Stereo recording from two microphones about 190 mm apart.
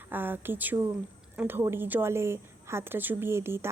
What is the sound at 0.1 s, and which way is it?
A woman's voice, 10° right (ahead or behind).